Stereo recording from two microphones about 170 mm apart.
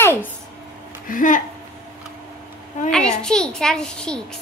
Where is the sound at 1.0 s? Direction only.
50° left (ahead or behind).